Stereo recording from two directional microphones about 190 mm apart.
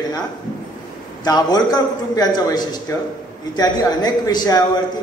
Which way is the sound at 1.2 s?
20° left (ahead or behind).